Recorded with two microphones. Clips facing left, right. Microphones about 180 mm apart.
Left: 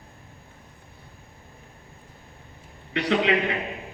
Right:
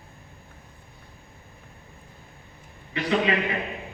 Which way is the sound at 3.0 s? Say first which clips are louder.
Left 2 dB; 75° left (ahead or behind).